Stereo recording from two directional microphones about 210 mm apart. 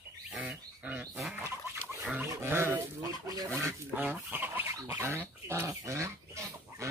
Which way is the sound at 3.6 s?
10° right (ahead or behind).